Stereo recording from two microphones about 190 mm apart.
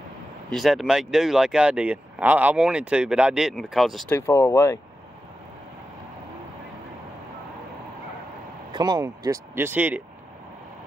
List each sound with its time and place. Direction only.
0.5 s speech: centre (ahead or behind)
4.1 s speech: 15° left (ahead or behind)
8.7 s speech: 20° right (ahead or behind)